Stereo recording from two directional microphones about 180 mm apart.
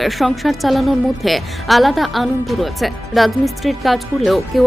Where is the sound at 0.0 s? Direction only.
Centre (ahead or behind).